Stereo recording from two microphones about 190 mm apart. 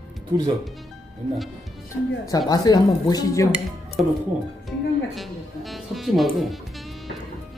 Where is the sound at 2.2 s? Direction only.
20° left (ahead or behind).